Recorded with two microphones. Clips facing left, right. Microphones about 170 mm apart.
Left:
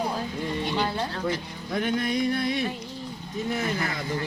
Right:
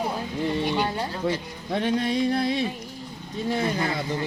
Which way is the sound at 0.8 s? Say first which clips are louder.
Right 1 dB; 10° right (ahead or behind).